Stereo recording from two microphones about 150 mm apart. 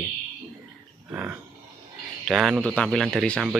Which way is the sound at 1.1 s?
15° right (ahead or behind).